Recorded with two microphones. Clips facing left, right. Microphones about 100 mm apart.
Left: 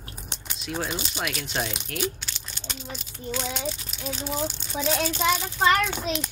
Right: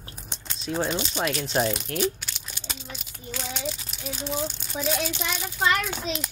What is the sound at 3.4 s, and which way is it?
Speech, centre (ahead or behind).